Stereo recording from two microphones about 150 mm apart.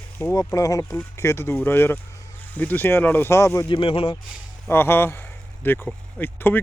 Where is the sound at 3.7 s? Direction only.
35° left (ahead or behind).